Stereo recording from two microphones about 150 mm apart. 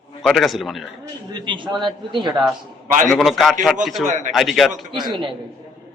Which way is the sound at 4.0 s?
55° right (ahead or behind).